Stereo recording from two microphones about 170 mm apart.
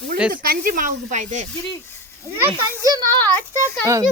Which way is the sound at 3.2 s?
10° left (ahead or behind).